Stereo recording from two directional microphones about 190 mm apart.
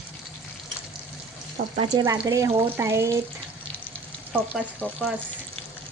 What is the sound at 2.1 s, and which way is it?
Speech, 15° right (ahead or behind).